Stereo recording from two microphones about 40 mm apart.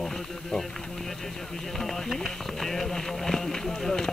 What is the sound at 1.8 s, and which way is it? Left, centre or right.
Speech, centre.